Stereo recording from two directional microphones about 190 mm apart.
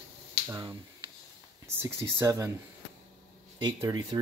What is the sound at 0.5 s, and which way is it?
Speech, 20° right (ahead or behind).